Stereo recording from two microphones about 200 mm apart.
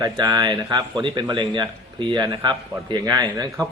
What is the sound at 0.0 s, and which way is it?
A man's voice, 20° right (ahead or behind).